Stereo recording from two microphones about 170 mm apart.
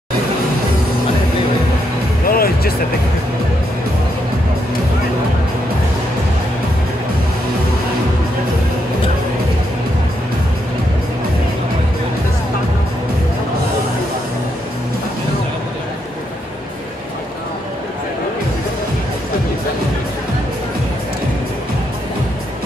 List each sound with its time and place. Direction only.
2.2 s music: 60° left (ahead or behind)